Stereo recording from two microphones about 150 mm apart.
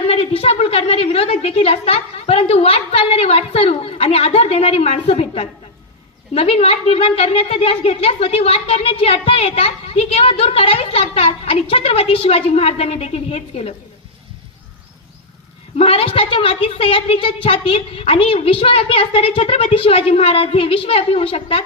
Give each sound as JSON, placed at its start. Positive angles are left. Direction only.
{"t": 0.0, "sound": "a woman's voice", "side_deg": 40}
{"t": 15.8, "sound": "a woman's voice", "side_deg": 40}